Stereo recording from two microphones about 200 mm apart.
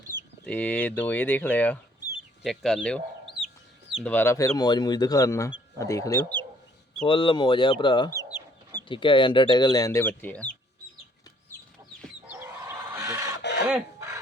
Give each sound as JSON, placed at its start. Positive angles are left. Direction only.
{"t": 0.4, "sound": "speech", "side_deg": 5}
{"t": 7.0, "sound": "speech", "side_deg": 25}
{"t": 8.1, "sound": "chicken", "side_deg": -15}
{"t": 8.9, "sound": "speech", "side_deg": 25}
{"t": 12.3, "sound": "chicken", "side_deg": -10}
{"t": 13.7, "sound": "a sound", "side_deg": -10}